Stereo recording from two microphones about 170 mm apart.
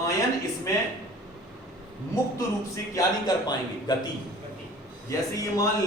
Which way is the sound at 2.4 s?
20° left (ahead or behind).